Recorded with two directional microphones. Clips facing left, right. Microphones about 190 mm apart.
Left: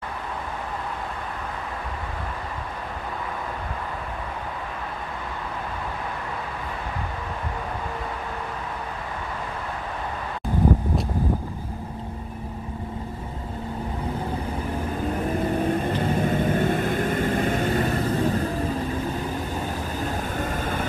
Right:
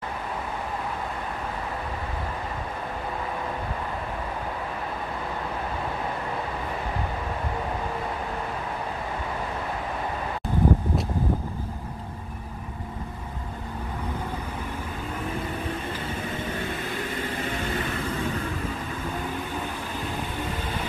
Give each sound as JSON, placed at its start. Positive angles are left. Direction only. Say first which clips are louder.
{"t": 15.1, "sound": "vehicle", "louder": "left 7 dB", "side_deg": 40}
{"t": 20.3, "sound": "vehicle", "louder": "left 4 dB", "side_deg": 50}